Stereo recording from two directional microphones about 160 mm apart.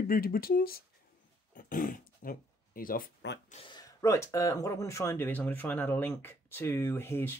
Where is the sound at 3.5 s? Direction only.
30° left (ahead or behind).